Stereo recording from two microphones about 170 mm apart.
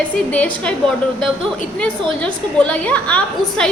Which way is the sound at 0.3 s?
10° left (ahead or behind).